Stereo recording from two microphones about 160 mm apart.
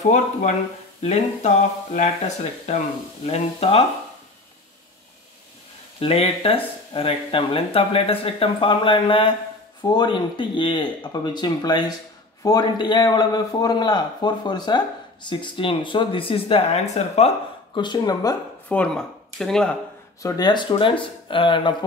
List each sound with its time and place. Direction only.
0.1 s speech: 50° left (ahead or behind)
5.9 s a man's voice: 40° left (ahead or behind)
17.7 s a man's voice: 25° left (ahead or behind)
18.7 s speech: 5° left (ahead or behind)
20.2 s speech: 25° left (ahead or behind)